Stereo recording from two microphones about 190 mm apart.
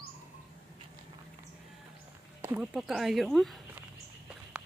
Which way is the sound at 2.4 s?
5° right (ahead or behind).